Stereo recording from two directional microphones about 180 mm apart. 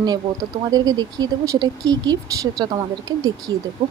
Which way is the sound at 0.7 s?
20° right (ahead or behind).